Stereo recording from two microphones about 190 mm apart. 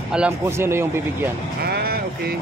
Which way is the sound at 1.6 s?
55° right (ahead or behind).